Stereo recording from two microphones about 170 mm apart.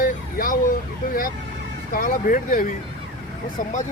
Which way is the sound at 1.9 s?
55° left (ahead or behind).